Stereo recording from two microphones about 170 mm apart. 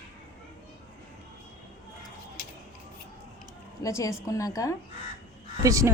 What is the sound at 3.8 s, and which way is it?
Speech, 20° left (ahead or behind).